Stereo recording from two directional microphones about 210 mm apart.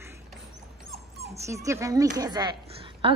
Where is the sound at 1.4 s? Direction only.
15° right (ahead or behind).